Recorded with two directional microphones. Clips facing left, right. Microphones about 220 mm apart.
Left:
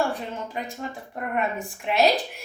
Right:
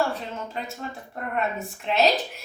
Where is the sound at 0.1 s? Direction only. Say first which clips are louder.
Left 1 dB; 15° left (ahead or behind).